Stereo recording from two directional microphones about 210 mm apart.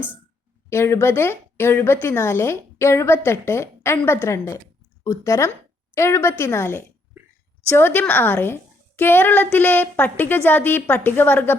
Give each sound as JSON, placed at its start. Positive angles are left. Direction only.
{"t": 0.7, "sound": "speech", "side_deg": 10}